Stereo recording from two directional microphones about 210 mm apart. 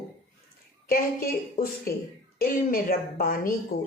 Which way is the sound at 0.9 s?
45° left (ahead or behind).